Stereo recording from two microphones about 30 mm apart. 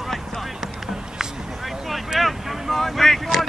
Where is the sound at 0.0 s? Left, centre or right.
Centre.